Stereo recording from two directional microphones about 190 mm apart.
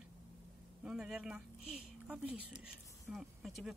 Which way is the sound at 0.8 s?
5° right (ahead or behind).